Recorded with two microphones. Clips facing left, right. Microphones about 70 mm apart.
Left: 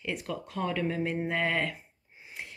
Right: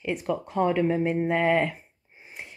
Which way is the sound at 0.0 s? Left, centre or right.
Centre.